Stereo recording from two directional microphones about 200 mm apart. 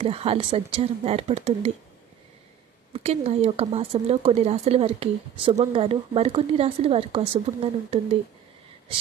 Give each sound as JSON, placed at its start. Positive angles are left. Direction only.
{"t": 0.0, "sound": "speech", "side_deg": -30}
{"t": 2.9, "sound": "speech", "side_deg": -30}